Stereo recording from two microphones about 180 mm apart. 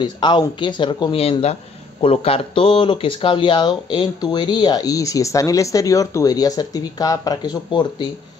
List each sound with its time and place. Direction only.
0.0 s speech: 25° left (ahead or behind)